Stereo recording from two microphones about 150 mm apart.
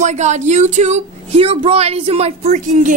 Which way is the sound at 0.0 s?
50° right (ahead or behind).